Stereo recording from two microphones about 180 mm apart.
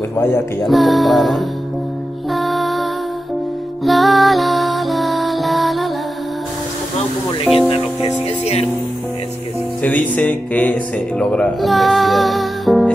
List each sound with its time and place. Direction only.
0.7 s music: centre (ahead or behind)
7.5 s music: 30° left (ahead or behind)
9.8 s speech: 10° left (ahead or behind)